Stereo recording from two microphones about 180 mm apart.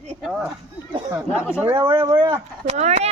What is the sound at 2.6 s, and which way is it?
Speech, 40° right (ahead or behind).